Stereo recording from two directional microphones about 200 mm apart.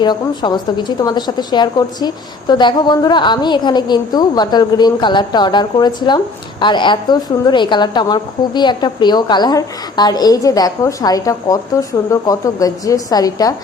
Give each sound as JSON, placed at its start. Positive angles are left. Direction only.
{"t": 0.0, "sound": "a woman's voice", "side_deg": 20}